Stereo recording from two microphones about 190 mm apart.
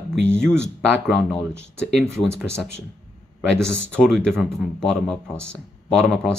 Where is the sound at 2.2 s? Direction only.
15° left (ahead or behind).